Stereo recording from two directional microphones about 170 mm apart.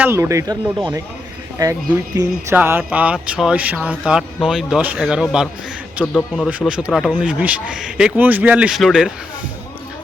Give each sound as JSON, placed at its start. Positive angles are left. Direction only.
{"t": 0.0, "sound": "a man's voice", "side_deg": -15}
{"t": 2.1, "sound": "a sound", "side_deg": -15}
{"t": 6.7, "sound": "a man's voice", "side_deg": -5}